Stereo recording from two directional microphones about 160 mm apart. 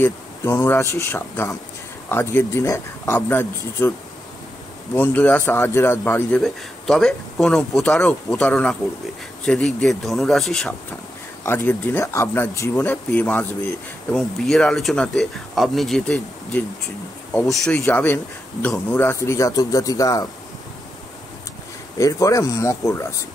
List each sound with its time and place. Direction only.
0.0 s a man's voice: 15° left (ahead or behind)
4.9 s a man's voice: 10° left (ahead or behind)
6.4 s speech: 5° left (ahead or behind)
11.4 s a man's voice: 15° left (ahead or behind)
21.9 s speech: 20° left (ahead or behind)